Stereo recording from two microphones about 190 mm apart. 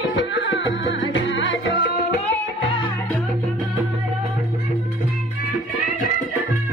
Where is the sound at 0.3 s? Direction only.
70° left (ahead or behind).